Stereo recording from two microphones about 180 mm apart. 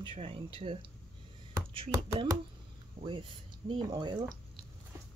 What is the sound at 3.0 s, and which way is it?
Speech, 30° right (ahead or behind).